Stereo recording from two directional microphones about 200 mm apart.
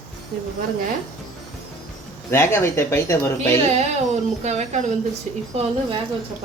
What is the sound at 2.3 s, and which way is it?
Speech, 15° left (ahead or behind).